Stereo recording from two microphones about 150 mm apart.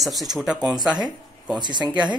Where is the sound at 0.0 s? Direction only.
Centre (ahead or behind).